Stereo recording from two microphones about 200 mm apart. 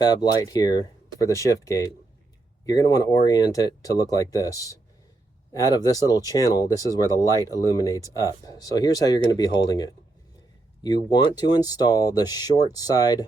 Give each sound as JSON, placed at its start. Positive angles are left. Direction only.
{"t": 0.0, "sound": "speech", "side_deg": 20}